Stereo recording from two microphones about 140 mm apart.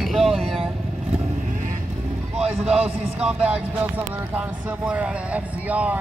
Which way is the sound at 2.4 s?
5° right (ahead or behind).